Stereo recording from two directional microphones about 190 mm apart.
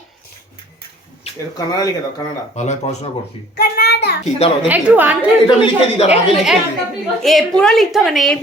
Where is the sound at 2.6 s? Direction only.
35° left (ahead or behind).